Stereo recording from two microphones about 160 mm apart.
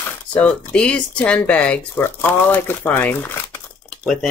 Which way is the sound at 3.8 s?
Centre (ahead or behind).